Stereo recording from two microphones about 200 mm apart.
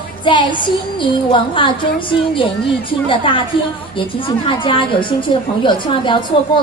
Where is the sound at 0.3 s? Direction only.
25° left (ahead or behind).